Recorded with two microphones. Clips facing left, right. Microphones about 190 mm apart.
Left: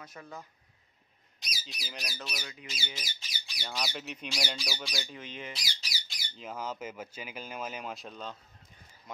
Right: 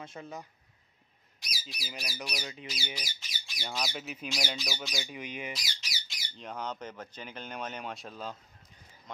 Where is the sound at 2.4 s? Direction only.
25° right (ahead or behind).